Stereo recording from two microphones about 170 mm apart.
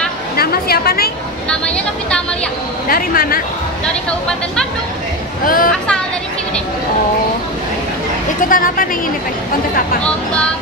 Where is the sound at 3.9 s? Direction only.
5° left (ahead or behind).